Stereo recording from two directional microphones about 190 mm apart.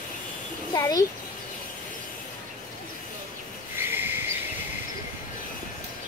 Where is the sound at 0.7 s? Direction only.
20° left (ahead or behind).